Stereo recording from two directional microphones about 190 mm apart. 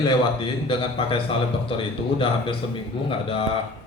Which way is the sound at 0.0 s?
25° left (ahead or behind).